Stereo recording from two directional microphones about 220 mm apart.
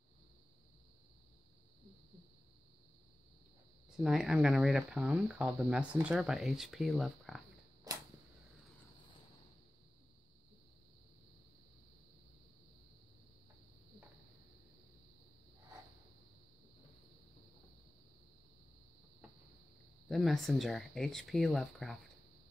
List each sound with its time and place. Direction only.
3.9 s speech: centre (ahead or behind)
7.9 s a sound: 15° right (ahead or behind)
20.1 s speech: centre (ahead or behind)